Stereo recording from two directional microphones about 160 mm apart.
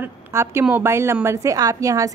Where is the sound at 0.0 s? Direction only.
15° right (ahead or behind).